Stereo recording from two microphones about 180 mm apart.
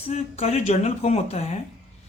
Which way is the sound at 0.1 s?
35° left (ahead or behind).